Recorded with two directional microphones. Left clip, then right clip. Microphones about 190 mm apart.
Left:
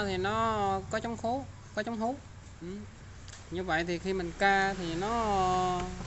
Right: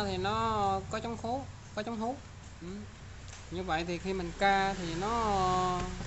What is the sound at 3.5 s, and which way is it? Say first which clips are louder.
Speech: left 2 dB; 15° left (ahead or behind).